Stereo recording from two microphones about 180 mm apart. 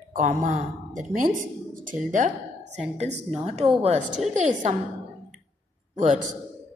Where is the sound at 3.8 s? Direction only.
40° right (ahead or behind).